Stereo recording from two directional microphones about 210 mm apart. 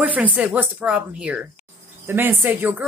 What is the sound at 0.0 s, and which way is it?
Speech, 5° right (ahead or behind).